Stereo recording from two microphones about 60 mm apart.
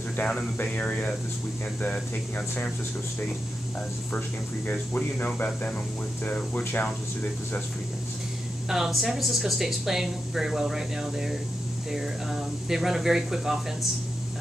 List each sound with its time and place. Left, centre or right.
0.2 s speech: centre
4.6 s speech: left
8.6 s speech: centre